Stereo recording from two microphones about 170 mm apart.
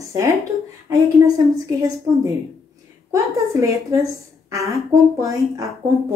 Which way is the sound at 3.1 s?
20° right (ahead or behind).